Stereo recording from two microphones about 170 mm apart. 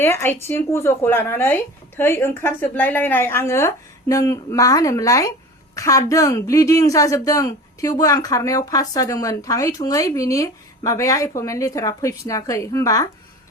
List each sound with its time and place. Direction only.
0.0 s a woman's voice: 15° left (ahead or behind)